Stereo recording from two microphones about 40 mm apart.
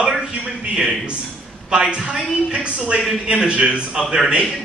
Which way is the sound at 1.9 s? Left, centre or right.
Centre.